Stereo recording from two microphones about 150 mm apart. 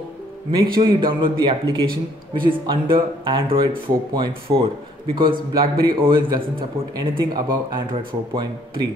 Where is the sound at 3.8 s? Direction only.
30° right (ahead or behind).